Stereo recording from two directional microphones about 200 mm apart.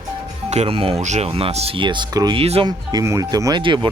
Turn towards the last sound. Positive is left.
turn(degrees=-25)  # may be behind; listen again after turning